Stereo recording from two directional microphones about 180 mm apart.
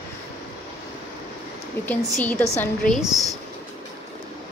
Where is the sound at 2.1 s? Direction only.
10° left (ahead or behind).